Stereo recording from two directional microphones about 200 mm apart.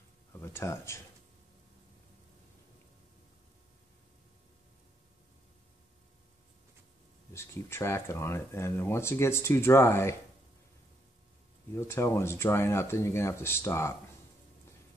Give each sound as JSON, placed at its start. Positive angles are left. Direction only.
{"t": 0.3, "sound": "speech", "side_deg": 10}
{"t": 7.3, "sound": "speech", "side_deg": 15}
{"t": 11.7, "sound": "speech", "side_deg": 10}